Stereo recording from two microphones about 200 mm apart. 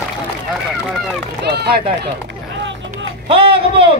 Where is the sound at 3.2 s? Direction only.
30° right (ahead or behind).